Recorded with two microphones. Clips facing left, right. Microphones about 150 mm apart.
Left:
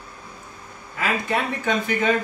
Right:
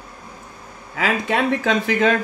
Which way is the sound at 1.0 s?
90° right.